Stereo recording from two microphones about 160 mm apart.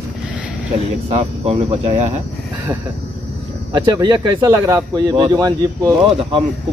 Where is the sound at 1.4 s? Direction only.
40° right (ahead or behind).